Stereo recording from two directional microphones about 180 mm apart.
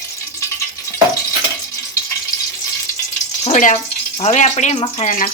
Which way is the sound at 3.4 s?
45° left (ahead or behind).